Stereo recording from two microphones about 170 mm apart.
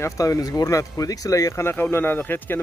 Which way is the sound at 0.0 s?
20° left (ahead or behind).